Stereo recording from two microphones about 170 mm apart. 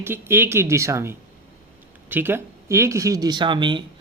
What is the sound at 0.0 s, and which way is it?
Speech, 15° right (ahead or behind).